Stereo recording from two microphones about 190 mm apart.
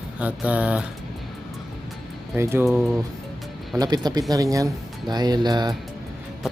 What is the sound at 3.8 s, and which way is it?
Speech, 20° right (ahead or behind).